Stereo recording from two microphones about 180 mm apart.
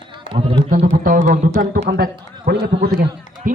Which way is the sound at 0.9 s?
50° right (ahead or behind).